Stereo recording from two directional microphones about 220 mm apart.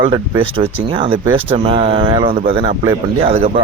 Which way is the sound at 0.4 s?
25° right (ahead or behind).